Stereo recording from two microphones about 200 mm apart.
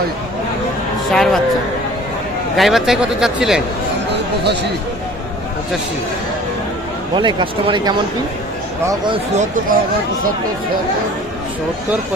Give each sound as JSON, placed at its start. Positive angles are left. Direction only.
{"t": 1.1, "sound": "speech", "side_deg": 0}
{"t": 2.6, "sound": "speech", "side_deg": 0}
{"t": 7.2, "sound": "speech", "side_deg": -25}
{"t": 9.3, "sound": "speech", "side_deg": -35}